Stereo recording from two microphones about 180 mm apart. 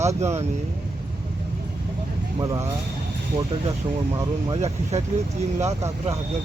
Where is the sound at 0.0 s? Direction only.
35° right (ahead or behind).